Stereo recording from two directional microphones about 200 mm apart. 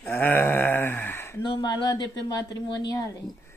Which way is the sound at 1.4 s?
20° left (ahead or behind).